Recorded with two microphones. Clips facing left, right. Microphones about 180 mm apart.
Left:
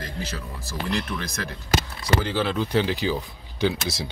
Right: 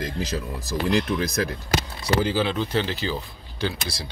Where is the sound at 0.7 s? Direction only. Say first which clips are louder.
Right 5 dB; 35° right (ahead or behind).